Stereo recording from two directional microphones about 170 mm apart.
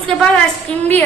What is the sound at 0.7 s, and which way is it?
Speech, 5° left (ahead or behind).